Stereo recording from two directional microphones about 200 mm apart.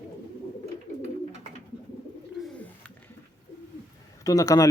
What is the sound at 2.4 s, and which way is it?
Bird, centre (ahead or behind).